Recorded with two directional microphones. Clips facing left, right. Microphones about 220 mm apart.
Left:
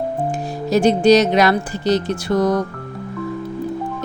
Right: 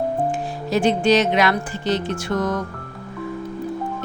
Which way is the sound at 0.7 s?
40° left (ahead or behind).